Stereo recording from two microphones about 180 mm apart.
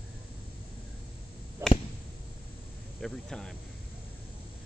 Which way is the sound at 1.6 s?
10° right (ahead or behind).